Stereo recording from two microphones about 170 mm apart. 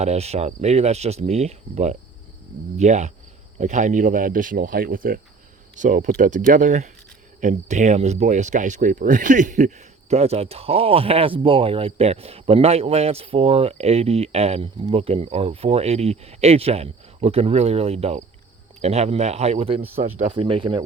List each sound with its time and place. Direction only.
0.0 s speech: 40° right (ahead or behind)